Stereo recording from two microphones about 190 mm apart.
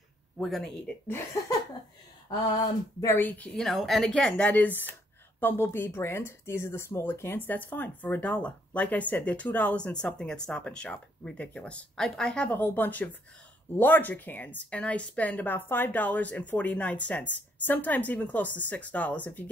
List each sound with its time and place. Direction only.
0.4 s speech: centre (ahead or behind)
2.2 s speech: 20° left (ahead or behind)